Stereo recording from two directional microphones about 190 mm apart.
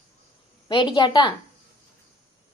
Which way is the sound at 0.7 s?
25° left (ahead or behind).